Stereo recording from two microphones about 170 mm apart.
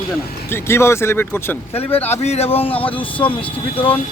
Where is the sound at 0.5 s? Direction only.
15° left (ahead or behind).